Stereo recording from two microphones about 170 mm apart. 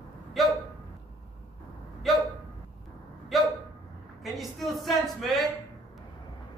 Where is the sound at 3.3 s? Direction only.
Centre (ahead or behind).